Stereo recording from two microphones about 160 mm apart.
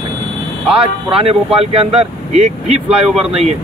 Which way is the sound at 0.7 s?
35° right (ahead or behind).